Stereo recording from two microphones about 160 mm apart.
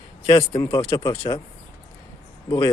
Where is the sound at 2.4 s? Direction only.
25° left (ahead or behind).